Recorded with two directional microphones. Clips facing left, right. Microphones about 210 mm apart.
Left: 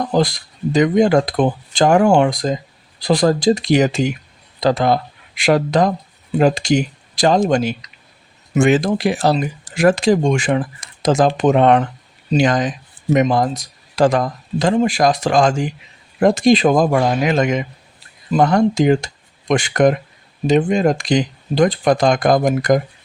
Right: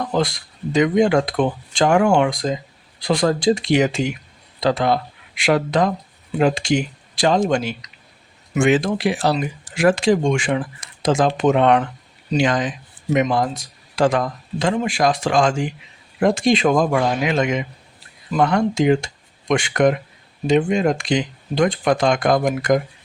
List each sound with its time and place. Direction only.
0.1 s speech: 35° left (ahead or behind)